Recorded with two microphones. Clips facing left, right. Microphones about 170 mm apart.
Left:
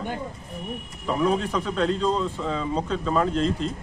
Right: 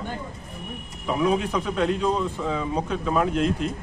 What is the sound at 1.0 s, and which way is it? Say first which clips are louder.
A man's voice: right 1 dB; 15° right (ahead or behind).